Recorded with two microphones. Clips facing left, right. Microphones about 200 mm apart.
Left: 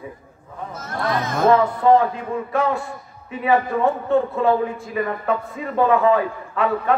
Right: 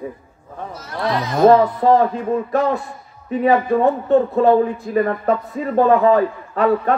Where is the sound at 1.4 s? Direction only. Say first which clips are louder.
Right 4 dB; 35° right (ahead or behind).